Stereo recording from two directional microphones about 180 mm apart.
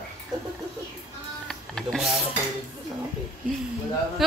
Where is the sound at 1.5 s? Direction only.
Centre (ahead or behind).